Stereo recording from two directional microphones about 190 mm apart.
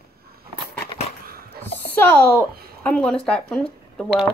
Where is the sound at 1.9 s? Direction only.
10° left (ahead or behind).